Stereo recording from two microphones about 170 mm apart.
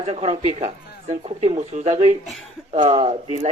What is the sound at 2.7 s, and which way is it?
Speech, 35° right (ahead or behind).